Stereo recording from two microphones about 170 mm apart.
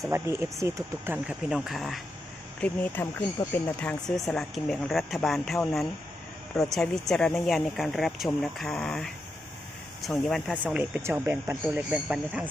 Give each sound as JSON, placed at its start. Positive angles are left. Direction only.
{"t": 0.1, "sound": "speech", "side_deg": -15}
{"t": 1.5, "sound": "speech", "side_deg": 0}